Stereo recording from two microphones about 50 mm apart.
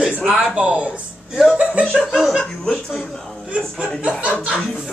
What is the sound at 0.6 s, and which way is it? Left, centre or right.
Speech, right.